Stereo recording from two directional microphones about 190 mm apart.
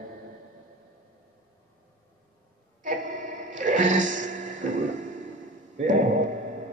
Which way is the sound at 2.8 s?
40° right (ahead or behind).